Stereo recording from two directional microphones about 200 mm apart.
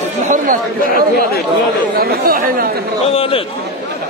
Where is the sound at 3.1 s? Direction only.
30° left (ahead or behind).